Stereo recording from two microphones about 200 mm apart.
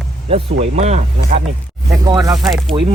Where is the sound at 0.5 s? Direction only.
35° right (ahead or behind).